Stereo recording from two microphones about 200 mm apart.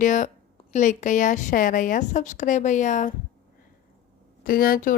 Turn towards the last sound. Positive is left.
turn(degrees=45)  # may be behind; listen again after turning